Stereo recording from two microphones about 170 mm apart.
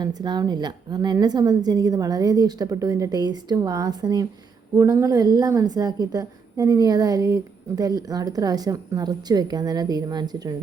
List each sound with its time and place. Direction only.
0.0 s a woman's voice: 25° right (ahead or behind)